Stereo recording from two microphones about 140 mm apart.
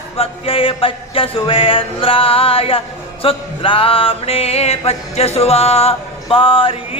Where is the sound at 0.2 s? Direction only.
40° left (ahead or behind).